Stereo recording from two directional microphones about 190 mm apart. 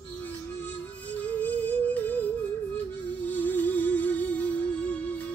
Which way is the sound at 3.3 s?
10° left (ahead or behind).